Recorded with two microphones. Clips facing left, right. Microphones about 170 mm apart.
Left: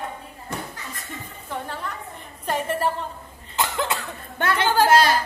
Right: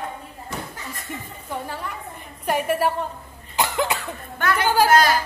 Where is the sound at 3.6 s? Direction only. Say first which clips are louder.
Right 2 dB; 20° right (ahead or behind).